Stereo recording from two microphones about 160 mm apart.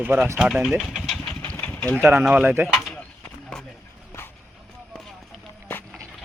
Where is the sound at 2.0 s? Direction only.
10° right (ahead or behind).